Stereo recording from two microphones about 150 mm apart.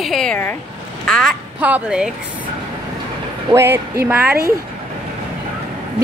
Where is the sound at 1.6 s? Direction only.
5° right (ahead or behind).